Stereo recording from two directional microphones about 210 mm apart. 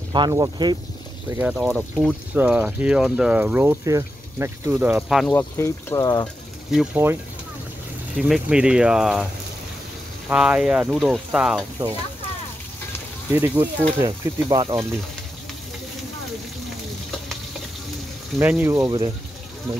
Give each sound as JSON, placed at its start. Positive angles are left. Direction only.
{"t": 0.1, "sound": "speech", "side_deg": -20}
{"t": 1.5, "sound": "speech", "side_deg": -5}
{"t": 5.2, "sound": "speech", "side_deg": 10}
{"t": 6.7, "sound": "speech", "side_deg": -5}
{"t": 8.2, "sound": "speech", "side_deg": -5}
{"t": 10.3, "sound": "speech", "side_deg": -5}
{"t": 13.3, "sound": "speech", "side_deg": -10}
{"t": 18.4, "sound": "speech", "side_deg": -10}